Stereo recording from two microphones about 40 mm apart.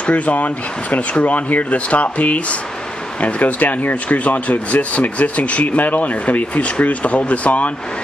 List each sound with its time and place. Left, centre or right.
0.0 s speech: left